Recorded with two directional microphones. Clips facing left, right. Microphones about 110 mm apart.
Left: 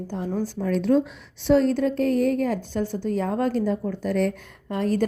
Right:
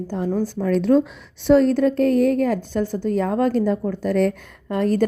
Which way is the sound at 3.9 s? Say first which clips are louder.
Right 4 dB; 85° right.